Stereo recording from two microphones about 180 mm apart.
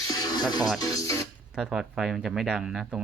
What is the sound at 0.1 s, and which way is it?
Music, 20° left (ahead or behind).